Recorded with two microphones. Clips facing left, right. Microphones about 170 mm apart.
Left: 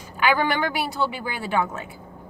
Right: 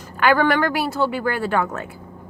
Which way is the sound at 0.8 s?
40° right (ahead or behind).